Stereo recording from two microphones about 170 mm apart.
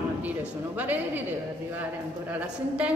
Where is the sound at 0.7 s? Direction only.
10° right (ahead or behind).